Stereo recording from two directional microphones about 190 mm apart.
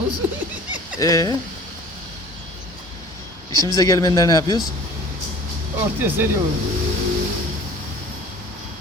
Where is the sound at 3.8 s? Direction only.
20° left (ahead or behind).